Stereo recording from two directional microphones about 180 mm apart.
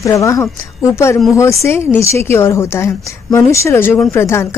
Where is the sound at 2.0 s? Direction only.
15° left (ahead or behind).